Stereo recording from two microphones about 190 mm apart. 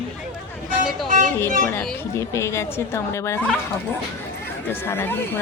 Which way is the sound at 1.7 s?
10° left (ahead or behind).